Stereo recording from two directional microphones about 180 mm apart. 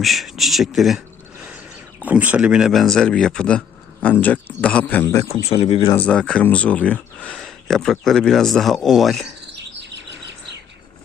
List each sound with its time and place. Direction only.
0.0 s a man's voice: centre (ahead or behind); by 5.3 s 15° left (ahead or behind)
5.3 s speech: 35° left (ahead or behind)
5.9 s speech: 5° left (ahead or behind)